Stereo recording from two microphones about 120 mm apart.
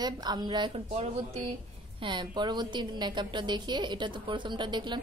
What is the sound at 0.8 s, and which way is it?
Speech, 60° right (ahead or behind).